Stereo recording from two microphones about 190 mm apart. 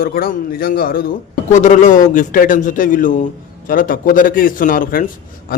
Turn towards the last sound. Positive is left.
turn(degrees=50)  # may be behind; listen again after turning